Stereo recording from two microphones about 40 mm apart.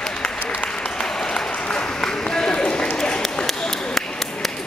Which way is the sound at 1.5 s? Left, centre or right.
Left.